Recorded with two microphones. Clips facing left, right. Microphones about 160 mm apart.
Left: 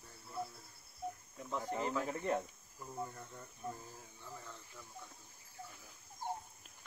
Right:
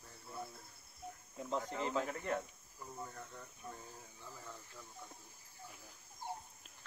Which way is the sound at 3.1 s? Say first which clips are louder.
Even; 10° left (ahead or behind).